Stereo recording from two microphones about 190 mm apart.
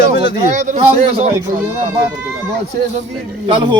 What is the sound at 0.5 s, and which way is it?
Speech, 40° right (ahead or behind).